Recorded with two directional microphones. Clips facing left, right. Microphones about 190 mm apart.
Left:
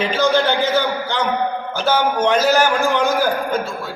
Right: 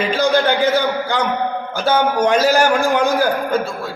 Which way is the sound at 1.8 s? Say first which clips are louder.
Right 2 dB; 10° right (ahead or behind).